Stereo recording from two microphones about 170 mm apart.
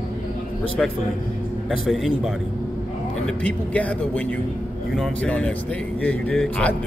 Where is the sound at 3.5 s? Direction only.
10° left (ahead or behind).